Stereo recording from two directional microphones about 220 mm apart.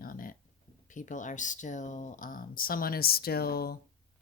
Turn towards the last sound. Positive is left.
turn(degrees=45)  # may be behind; listen again after turning